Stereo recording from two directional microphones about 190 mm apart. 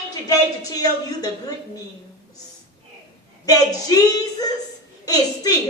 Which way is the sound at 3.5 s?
20° left (ahead or behind).